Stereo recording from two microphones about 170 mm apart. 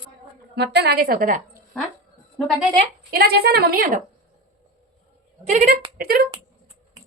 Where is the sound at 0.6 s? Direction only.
75° right (ahead or behind); by 1.4 s 55° right (ahead or behind).